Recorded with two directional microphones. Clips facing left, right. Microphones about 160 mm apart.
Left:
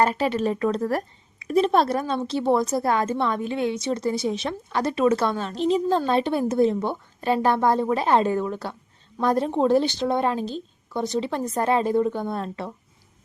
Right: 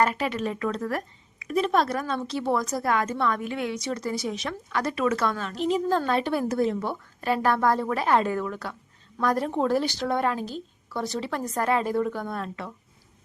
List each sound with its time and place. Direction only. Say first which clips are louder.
0.0 s a woman's voice: left 3 dB; 30° left (ahead or behind)